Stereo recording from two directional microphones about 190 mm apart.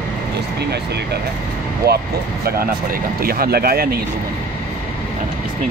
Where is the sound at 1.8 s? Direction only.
55° right (ahead or behind).